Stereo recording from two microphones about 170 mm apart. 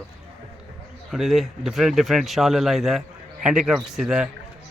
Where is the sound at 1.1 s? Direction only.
Centre (ahead or behind).